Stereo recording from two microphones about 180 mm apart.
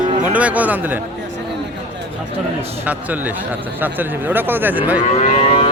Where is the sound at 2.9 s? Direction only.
10° right (ahead or behind).